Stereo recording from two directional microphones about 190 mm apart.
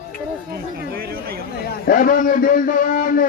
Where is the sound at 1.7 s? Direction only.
50° left (ahead or behind).